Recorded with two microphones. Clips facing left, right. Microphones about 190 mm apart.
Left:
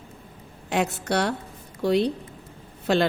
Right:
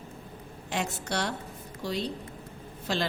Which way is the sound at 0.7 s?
60° left (ahead or behind).